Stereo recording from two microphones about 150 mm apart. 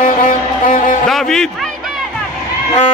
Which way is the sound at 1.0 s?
5° left (ahead or behind).